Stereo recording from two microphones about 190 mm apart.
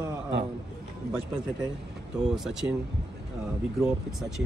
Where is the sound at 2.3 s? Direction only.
5° right (ahead or behind).